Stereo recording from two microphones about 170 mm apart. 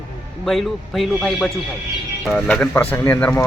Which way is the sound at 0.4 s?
Centre (ahead or behind).